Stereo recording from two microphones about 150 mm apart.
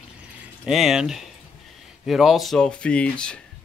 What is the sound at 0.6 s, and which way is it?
Speech, centre (ahead or behind).